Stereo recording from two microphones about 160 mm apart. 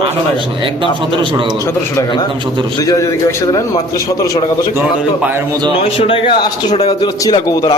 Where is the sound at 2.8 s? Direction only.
20° left (ahead or behind).